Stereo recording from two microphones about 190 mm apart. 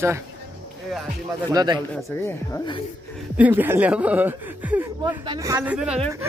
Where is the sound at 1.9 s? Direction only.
15° left (ahead or behind).